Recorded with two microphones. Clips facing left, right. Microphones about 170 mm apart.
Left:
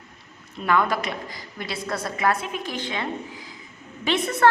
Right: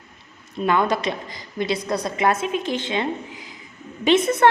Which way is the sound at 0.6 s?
20° right (ahead or behind).